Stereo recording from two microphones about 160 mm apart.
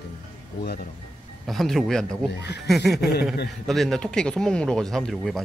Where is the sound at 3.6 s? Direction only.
Centre (ahead or behind).